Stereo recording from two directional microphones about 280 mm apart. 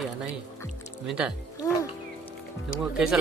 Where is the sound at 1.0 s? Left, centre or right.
Centre.